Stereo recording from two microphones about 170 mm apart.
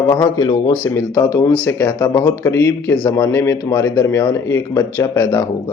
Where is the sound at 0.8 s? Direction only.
15° left (ahead or behind).